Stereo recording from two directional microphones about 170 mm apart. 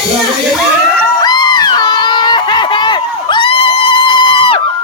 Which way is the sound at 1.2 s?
25° left (ahead or behind).